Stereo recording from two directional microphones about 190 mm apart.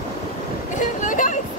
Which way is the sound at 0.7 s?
40° left (ahead or behind).